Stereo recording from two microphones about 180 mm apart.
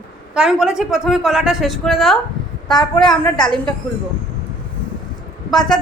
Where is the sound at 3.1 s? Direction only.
25° left (ahead or behind).